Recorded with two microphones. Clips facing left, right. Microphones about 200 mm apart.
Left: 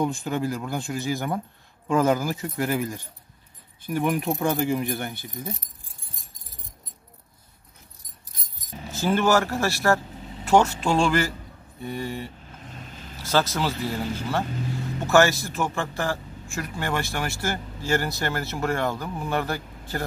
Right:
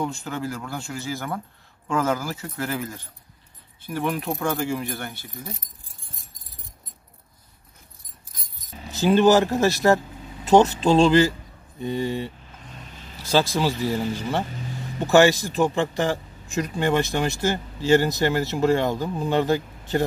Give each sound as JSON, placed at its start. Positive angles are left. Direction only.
{"t": 0.0, "sound": "speech", "side_deg": 15}
{"t": 8.9, "sound": "speech", "side_deg": -15}